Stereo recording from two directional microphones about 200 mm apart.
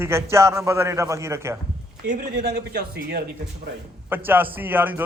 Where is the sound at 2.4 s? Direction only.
55° right (ahead or behind).